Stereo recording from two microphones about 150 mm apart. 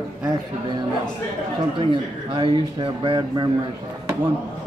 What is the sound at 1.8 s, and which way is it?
Speech, 35° right (ahead or behind).